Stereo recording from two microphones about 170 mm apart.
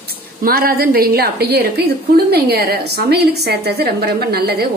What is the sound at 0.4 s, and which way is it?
A woman's voice, 60° right (ahead or behind).